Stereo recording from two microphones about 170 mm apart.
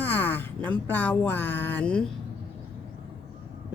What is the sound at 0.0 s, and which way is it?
Speech, 10° left (ahead or behind).